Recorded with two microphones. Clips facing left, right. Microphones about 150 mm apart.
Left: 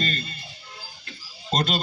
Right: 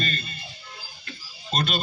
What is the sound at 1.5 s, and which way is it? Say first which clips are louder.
Speech: left 2 dB; 40° left (ahead or behind).